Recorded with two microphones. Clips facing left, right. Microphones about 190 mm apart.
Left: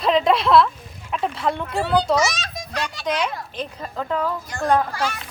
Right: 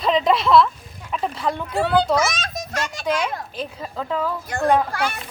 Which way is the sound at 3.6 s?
Centre (ahead or behind).